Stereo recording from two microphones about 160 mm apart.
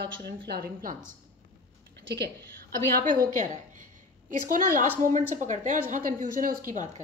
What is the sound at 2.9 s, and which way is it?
Speech, 55° right (ahead or behind).